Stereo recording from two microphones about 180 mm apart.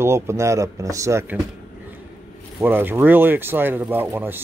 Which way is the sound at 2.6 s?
10° right (ahead or behind).